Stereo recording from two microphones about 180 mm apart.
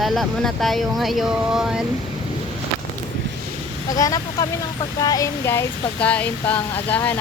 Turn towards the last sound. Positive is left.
turn(degrees=10)  # may be behind; listen again after turning